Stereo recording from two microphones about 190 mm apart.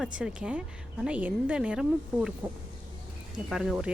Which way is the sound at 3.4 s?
Centre (ahead or behind).